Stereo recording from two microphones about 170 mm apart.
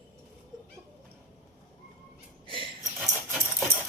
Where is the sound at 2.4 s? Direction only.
30° right (ahead or behind).